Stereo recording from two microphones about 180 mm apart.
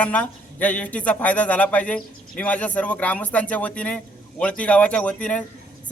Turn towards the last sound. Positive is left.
turn(degrees=5)  # may be behind; listen again after turning